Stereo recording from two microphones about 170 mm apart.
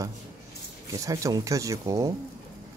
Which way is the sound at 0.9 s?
20° right (ahead or behind).